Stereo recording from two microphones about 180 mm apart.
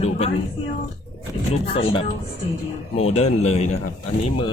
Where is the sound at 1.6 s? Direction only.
30° left (ahead or behind).